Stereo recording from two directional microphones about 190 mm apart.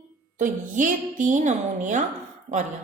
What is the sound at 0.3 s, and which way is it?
A woman's voice, 45° right (ahead or behind).